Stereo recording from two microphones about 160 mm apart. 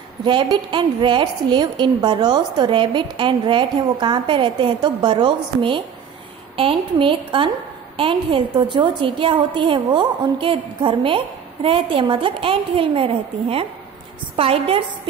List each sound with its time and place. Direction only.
0.2 s a woman's voice: 30° right (ahead or behind)